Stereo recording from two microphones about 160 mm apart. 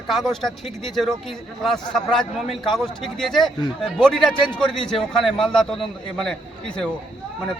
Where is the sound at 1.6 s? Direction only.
5° left (ahead or behind).